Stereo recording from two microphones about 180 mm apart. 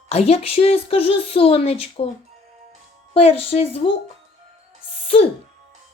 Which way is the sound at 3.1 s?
35° left (ahead or behind).